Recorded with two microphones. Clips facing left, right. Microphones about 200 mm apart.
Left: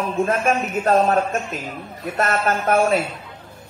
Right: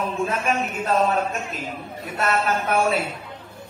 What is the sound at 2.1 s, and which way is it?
Speech, 45° left (ahead or behind).